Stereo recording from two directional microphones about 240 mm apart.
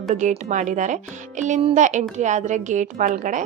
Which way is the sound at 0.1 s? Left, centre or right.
Right.